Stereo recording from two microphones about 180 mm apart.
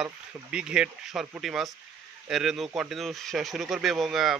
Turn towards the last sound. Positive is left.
turn(degrees=0)  # may be behind; listen again after turning